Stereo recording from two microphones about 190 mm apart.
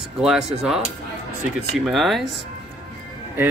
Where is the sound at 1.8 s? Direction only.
Centre (ahead or behind).